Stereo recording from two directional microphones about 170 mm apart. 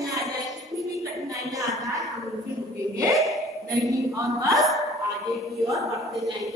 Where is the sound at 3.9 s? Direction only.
20° right (ahead or behind).